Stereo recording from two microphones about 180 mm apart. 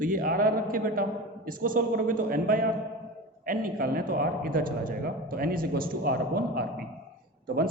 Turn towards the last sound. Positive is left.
turn(degrees=-50)  # may be behind; listen again after turning